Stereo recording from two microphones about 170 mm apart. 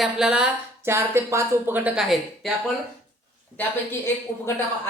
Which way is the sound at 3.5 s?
10° left (ahead or behind).